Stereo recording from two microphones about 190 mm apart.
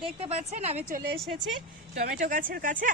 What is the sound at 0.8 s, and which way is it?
Speech, 50° right (ahead or behind).